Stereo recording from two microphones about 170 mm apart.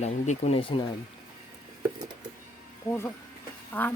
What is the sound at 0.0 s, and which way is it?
Speech, 40° left (ahead or behind).